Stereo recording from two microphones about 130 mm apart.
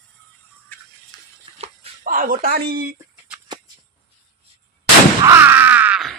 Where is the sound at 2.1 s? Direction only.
90° right.